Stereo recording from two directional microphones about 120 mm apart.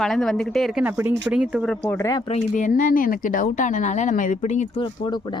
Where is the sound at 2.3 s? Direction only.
90° left.